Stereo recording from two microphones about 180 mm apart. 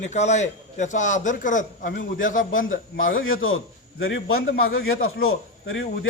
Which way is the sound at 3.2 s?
90° left.